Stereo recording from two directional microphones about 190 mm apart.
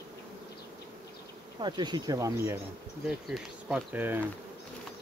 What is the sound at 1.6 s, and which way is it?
Speech, 25° right (ahead or behind).